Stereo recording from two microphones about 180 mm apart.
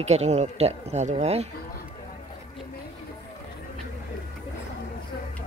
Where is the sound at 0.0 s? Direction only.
35° right (ahead or behind).